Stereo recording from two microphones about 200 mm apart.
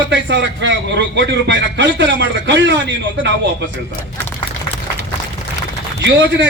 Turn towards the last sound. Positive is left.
turn(degrees=-65)  # may be behind; listen again after turning